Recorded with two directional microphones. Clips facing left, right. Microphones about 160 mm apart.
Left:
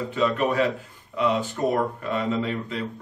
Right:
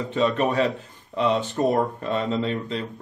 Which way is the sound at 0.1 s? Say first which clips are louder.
Right 2 dB; 30° right (ahead or behind).